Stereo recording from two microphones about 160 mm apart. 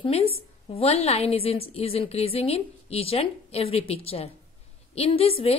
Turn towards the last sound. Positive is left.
turn(degrees=35)  # may be behind; listen again after turning